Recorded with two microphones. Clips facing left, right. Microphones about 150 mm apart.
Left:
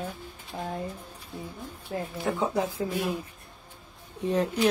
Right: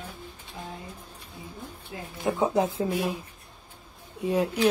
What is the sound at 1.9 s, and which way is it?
Speech, 50° left (ahead or behind).